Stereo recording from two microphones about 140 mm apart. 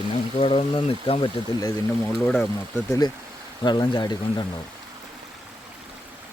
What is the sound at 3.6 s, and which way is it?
Speech, 30° left (ahead or behind).